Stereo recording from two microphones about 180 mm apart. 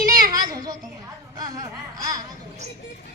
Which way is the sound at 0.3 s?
20° right (ahead or behind).